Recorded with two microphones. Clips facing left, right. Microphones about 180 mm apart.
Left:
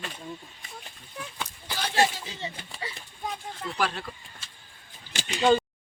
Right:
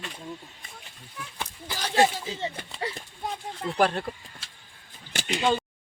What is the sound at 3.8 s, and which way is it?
Speech, 50° right (ahead or behind).